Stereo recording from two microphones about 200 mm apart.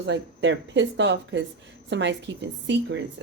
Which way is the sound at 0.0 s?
60° right (ahead or behind).